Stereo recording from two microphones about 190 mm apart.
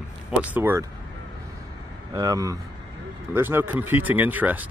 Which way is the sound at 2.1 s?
20° right (ahead or behind).